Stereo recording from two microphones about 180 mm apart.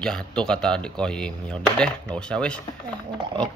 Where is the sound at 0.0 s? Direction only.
5° left (ahead or behind).